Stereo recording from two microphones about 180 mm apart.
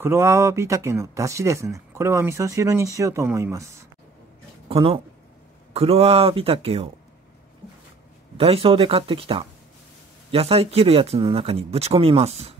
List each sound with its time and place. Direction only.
0.0 s speech: 15° right (ahead or behind)
4.6 s speech: 30° right (ahead or behind)
8.4 s speech: 30° right (ahead or behind)